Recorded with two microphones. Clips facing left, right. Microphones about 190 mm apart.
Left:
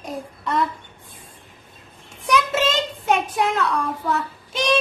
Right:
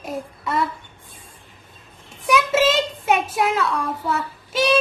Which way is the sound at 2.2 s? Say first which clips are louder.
Right 3 dB; 5° right (ahead or behind).